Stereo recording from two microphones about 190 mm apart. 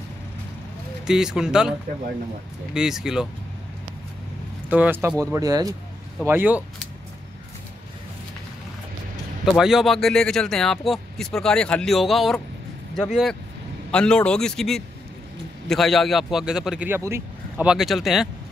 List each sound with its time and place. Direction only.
1.0 s speech: 5° right (ahead or behind)
4.6 s speech: 10° right (ahead or behind)
9.6 s speech: centre (ahead or behind)